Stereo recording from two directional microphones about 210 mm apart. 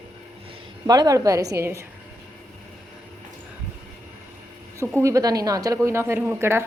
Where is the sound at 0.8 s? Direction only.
20° right (ahead or behind).